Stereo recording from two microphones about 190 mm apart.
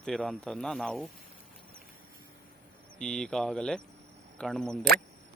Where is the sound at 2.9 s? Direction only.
5° left (ahead or behind).